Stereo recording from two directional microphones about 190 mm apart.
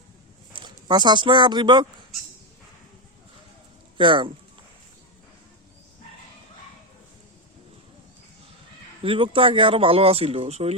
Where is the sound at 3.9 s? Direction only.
25° right (ahead or behind).